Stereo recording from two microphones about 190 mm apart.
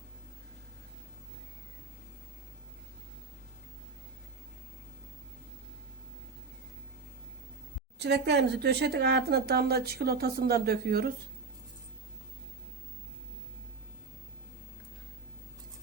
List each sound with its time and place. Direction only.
7.9 s speech: 60° right (ahead or behind)